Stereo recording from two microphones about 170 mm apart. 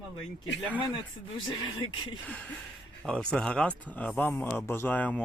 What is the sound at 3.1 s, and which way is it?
Speech, 5° left (ahead or behind).